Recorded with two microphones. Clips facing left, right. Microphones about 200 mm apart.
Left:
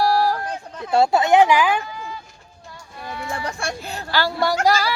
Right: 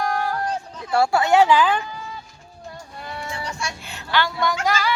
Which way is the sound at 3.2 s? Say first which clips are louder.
Left 5 dB; 55° left (ahead or behind).